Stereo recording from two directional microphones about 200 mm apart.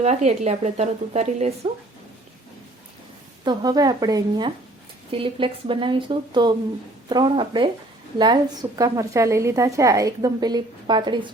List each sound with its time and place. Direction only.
0.0 s speech: 35° right (ahead or behind)
3.4 s a woman's voice: 20° right (ahead or behind)